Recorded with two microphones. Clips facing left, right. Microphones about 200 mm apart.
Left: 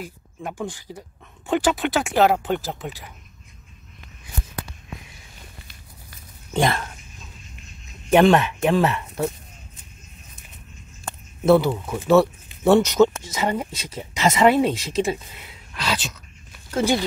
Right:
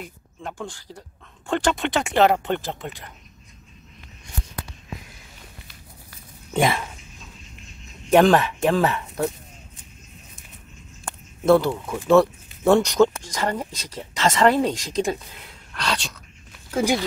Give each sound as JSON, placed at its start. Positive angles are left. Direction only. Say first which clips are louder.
{"t": 0.0, "sound": "speech", "louder": "left 2 dB", "side_deg": 10}
{"t": 6.5, "sound": "speech", "louder": "even", "side_deg": -5}
{"t": 8.1, "sound": "speech", "louder": "even", "side_deg": 0}
{"t": 11.4, "sound": "speech", "louder": "left 1 dB", "side_deg": 5}
{"t": 16.7, "sound": "speech", "louder": "left 1 dB", "side_deg": -10}